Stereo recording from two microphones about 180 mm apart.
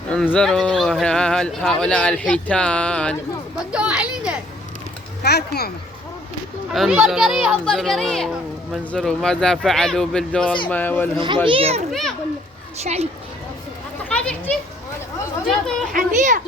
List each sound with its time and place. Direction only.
0.1 s speech: 5° left (ahead or behind)
3.7 s speech: 5° right (ahead or behind)
5.2 s speech: 60° left (ahead or behind)
6.7 s speech: 5° right (ahead or behind)
11.4 s a child's voice: 30° right (ahead or behind)
11.9 s speech: centre (ahead or behind)
12.8 s a child's voice: 35° right (ahead or behind)
14.0 s a child's voice: 5° left (ahead or behind)
15.9 s a child's voice: 50° right (ahead or behind)